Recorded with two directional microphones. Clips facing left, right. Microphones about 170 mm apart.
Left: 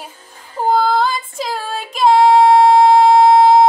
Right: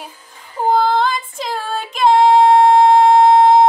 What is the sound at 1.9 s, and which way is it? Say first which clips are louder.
Music: left 1 dB; 5° left (ahead or behind).